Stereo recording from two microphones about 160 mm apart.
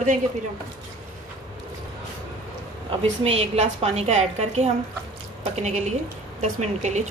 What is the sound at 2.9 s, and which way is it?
A woman's voice, 40° right (ahead or behind).